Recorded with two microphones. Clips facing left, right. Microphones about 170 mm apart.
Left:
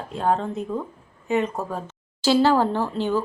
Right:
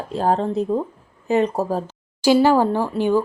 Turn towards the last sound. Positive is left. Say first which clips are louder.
# right 4 dB
turn(degrees=-15)  # may be behind; listen again after turning